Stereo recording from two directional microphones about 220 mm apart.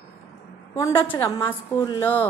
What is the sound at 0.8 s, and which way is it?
A woman's voice, 15° left (ahead or behind).